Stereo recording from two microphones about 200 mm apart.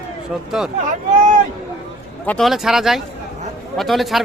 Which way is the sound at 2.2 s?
5° left (ahead or behind).